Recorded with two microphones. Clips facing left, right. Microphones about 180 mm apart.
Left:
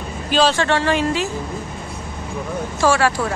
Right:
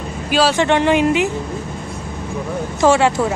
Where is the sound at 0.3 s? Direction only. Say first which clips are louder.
Right 1 dB; 10° right (ahead or behind).